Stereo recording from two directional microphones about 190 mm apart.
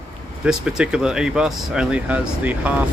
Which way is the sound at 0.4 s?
5° right (ahead or behind).